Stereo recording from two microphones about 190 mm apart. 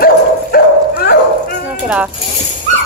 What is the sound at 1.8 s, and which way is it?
Music, 5° right (ahead or behind).